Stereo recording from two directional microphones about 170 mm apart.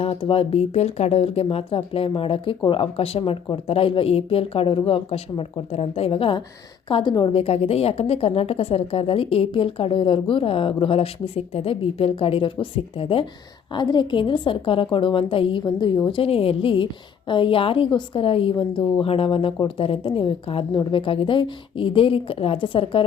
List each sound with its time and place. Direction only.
0.0 s a woman's voice: 35° left (ahead or behind)